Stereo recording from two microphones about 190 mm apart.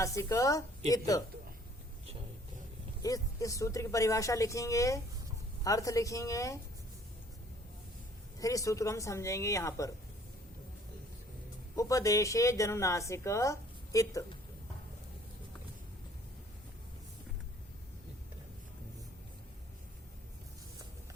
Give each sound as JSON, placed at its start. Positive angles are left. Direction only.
{"t": 0.0, "sound": "a woman's voice", "side_deg": 15}
{"t": 3.0, "sound": "a woman's voice", "side_deg": 20}
{"t": 8.4, "sound": "a woman's voice", "side_deg": 15}
{"t": 11.8, "sound": "a woman's voice", "side_deg": 15}